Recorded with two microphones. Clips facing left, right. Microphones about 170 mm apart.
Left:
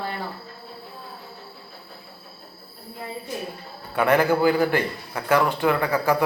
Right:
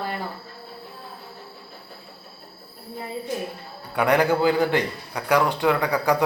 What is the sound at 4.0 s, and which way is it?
A man's voice, 15° right (ahead or behind).